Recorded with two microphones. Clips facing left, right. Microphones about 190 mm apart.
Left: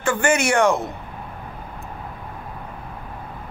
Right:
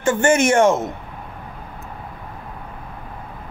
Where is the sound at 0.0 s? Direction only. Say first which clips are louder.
Right 4 dB; 25° right (ahead or behind).